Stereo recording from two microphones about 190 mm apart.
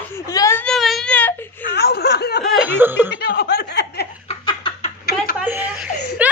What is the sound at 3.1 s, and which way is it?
Speech, 55° left (ahead or behind).